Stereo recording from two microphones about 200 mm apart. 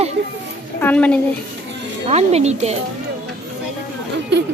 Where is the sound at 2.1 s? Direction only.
35° right (ahead or behind).